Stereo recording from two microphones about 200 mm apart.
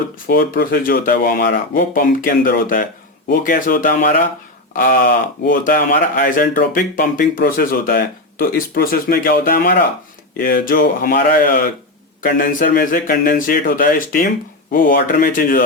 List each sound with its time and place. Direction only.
0.3 s speech: 50° left (ahead or behind)